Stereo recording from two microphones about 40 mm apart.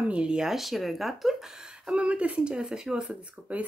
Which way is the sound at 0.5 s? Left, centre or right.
Centre.